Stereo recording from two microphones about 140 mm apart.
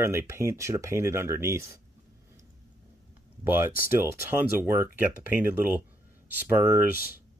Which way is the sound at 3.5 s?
15° right (ahead or behind).